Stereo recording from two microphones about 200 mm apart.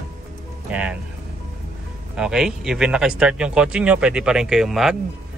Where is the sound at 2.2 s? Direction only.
5° right (ahead or behind).